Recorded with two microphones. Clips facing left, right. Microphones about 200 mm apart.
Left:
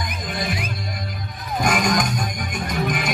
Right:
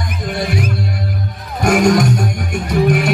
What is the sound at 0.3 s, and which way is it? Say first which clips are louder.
Music: right 8 dB; 70° right (ahead or behind).